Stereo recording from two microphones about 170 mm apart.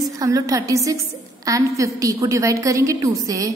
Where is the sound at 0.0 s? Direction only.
20° right (ahead or behind).